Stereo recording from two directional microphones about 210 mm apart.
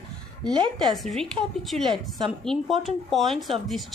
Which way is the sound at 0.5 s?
20° right (ahead or behind).